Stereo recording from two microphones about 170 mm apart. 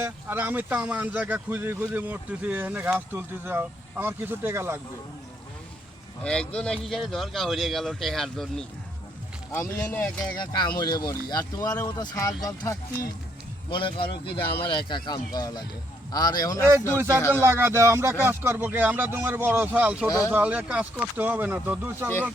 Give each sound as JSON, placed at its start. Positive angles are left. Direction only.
{"t": 0.0, "sound": "speech", "side_deg": -10}
{"t": 6.2, "sound": "speech", "side_deg": 5}
{"t": 10.3, "sound": "speech", "side_deg": 25}
{"t": 17.4, "sound": "speech", "side_deg": -15}
{"t": 20.1, "sound": "speech", "side_deg": 20}
{"t": 20.3, "sound": "speech", "side_deg": -10}